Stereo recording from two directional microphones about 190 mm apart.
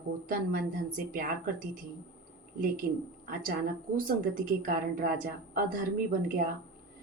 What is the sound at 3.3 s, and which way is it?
Speech, 45° right (ahead or behind).